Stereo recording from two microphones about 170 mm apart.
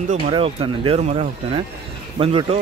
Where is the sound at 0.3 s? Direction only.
35° right (ahead or behind).